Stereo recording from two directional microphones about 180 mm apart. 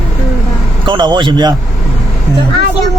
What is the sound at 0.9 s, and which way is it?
Speech, 25° right (ahead or behind).